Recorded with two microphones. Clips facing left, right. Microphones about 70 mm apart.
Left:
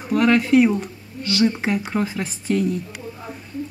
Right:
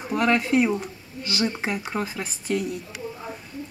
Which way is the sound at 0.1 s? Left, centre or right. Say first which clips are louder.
Left 5 dB; right.